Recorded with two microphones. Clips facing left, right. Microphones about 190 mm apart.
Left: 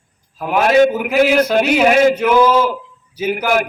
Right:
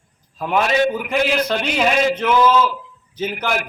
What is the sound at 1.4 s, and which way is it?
A man's voice, 10° left (ahead or behind).